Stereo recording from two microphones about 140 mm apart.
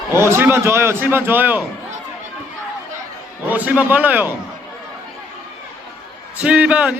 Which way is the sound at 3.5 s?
10° right (ahead or behind).